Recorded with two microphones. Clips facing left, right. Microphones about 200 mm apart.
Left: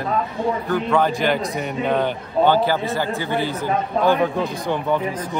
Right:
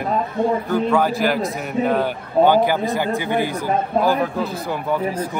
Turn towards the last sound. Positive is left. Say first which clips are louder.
# even
turn(degrees=-10)  # may be behind; listen again after turning